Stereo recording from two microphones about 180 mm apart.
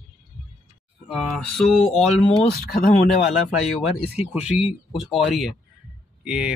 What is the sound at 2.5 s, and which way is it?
Speech, 60° left (ahead or behind).